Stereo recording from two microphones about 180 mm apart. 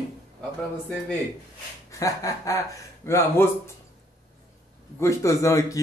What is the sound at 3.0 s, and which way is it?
Speech, 15° left (ahead or behind).